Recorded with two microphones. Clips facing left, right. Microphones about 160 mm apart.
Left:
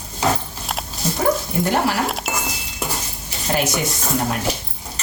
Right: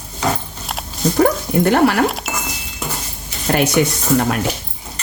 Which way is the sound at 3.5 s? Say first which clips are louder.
Right 5 dB; 60° right (ahead or behind).